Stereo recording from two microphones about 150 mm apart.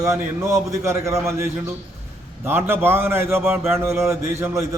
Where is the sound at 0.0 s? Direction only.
20° right (ahead or behind).